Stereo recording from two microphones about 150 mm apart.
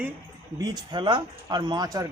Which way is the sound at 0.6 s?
30° right (ahead or behind).